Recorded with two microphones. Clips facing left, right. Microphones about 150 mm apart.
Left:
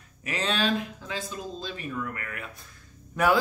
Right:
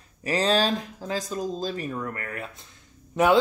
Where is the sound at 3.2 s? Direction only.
25° right (ahead or behind).